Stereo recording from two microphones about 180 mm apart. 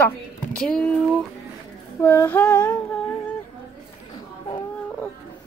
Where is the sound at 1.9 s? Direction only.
15° left (ahead or behind).